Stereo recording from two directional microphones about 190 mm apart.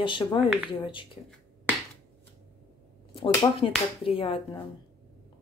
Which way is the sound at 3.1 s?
30° left (ahead or behind).